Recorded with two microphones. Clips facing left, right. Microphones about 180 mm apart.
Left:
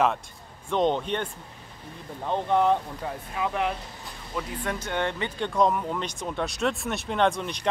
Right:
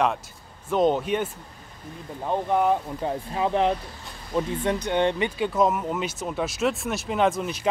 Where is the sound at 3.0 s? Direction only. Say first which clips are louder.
Right 5 dB; 30° right (ahead or behind).